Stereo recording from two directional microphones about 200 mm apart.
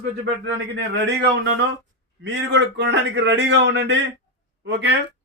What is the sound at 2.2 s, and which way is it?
Speech, 60° right (ahead or behind).